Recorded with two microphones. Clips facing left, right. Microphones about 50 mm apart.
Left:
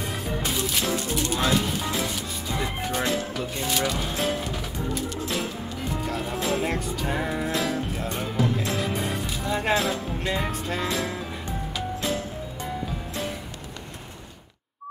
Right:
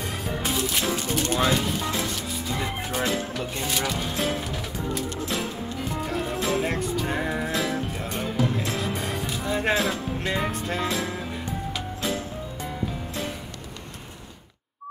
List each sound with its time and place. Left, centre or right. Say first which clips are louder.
0.4 s music: right 2 dB; centre
1.1 s music: right 1 dB; right
1.4 s music: left 1 dB; centre
2.5 s speech: left 2 dB; centre
5.9 s music: even; centre
9.2 s speech: right 1 dB; centre
11.7 s music: left 3 dB; centre